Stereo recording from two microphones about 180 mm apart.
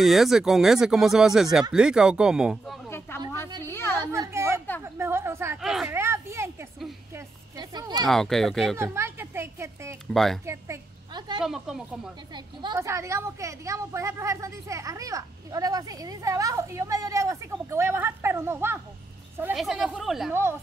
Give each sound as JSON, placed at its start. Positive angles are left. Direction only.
{"t": 0.0, "sound": "speech", "side_deg": 0}
{"t": 3.6, "sound": "a sound", "side_deg": 15}
{"t": 4.0, "sound": "a sound", "side_deg": -15}
{"t": 4.8, "sound": "a woman's voice", "side_deg": -15}
{"t": 5.6, "sound": "speech", "side_deg": 0}
{"t": 5.9, "sound": "a woman's voice", "side_deg": -15}
{"t": 7.5, "sound": "speech", "side_deg": -25}
{"t": 8.1, "sound": "speech", "side_deg": 0}
{"t": 8.7, "sound": "a child's voice", "side_deg": -15}
{"t": 10.1, "sound": "speech", "side_deg": 0}
{"t": 10.4, "sound": "a sound", "side_deg": -15}
{"t": 11.4, "sound": "speech", "side_deg": 0}
{"t": 12.6, "sound": "a woman's voice", "side_deg": -15}
{"t": 19.5, "sound": "speech", "side_deg": 0}